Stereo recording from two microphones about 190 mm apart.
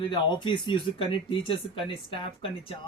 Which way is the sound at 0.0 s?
25° left (ahead or behind).